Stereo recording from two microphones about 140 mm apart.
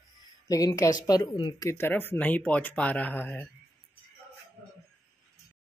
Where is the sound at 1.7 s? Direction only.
15° left (ahead or behind).